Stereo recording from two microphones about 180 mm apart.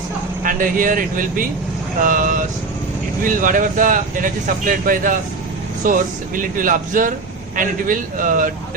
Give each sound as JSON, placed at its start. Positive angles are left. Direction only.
{"t": 0.4, "sound": "speech", "side_deg": -50}